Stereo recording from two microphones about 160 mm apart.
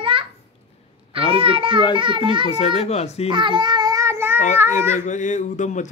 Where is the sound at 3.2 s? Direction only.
30° right (ahead or behind).